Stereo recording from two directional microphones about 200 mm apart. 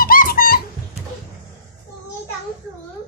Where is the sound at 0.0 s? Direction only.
45° left (ahead or behind).